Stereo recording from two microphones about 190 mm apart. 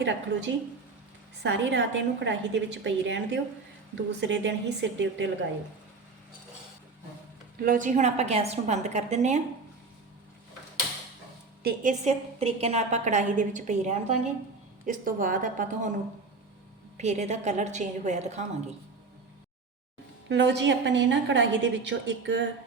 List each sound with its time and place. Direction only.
0.0 s a woman's voice: 70° right (ahead or behind)
7.6 s a woman's voice: 45° right (ahead or behind)
11.6 s a woman's voice: 45° right (ahead or behind)
17.0 s a woman's voice: 35° right (ahead or behind)
20.2 s a woman's voice: 65° right (ahead or behind)